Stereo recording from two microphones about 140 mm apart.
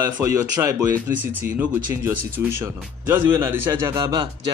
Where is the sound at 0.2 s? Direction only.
20° right (ahead or behind).